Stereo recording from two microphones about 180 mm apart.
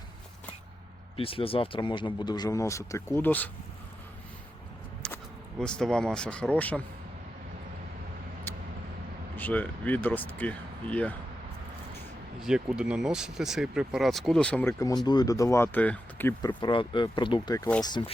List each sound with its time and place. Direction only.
1.1 s speech: 30° left (ahead or behind); by 3.5 s 10° left (ahead or behind)
5.0 s speech: 5° left (ahead or behind)
9.3 s speech: 10° left (ahead or behind)
12.4 s speech: 5° right (ahead or behind)
16.4 s speech: 25° left (ahead or behind)